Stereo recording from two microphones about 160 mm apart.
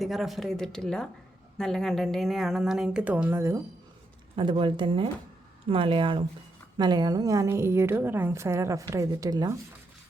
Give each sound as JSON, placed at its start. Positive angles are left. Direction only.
{"t": 0.0, "sound": "a woman's voice", "side_deg": 0}
{"t": 4.4, "sound": "a woman's voice", "side_deg": -30}